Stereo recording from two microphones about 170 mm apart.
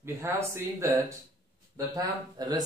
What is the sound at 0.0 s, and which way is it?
Speech, 15° right (ahead or behind).